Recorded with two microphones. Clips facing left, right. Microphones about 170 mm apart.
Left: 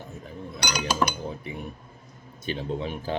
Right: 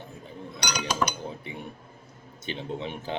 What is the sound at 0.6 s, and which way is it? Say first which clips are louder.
Chink: left 2 dB; 5° left (ahead or behind).